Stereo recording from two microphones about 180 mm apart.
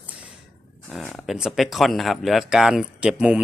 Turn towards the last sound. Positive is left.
turn(degrees=-5)  # may be behind; listen again after turning